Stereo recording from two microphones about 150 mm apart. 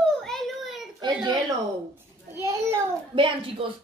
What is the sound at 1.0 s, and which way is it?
Speech, 30° right (ahead or behind).